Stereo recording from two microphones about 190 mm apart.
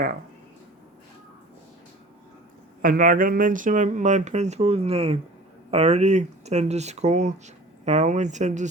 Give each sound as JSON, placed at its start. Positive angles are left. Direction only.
{"t": 2.8, "sound": "speech", "side_deg": -50}